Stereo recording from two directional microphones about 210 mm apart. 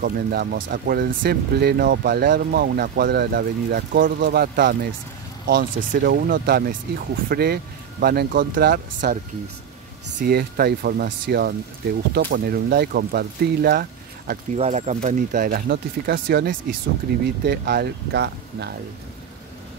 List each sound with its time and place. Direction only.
0.0 s speech: 45° right (ahead or behind)
14.6 s speech: 30° right (ahead or behind); by 18.8 s 50° right (ahead or behind)